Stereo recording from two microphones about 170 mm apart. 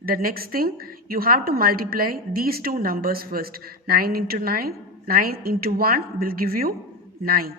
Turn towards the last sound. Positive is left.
turn(degrees=-60)  # may be behind; listen again after turning